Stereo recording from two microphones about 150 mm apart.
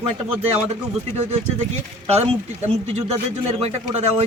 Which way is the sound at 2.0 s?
45° right (ahead or behind).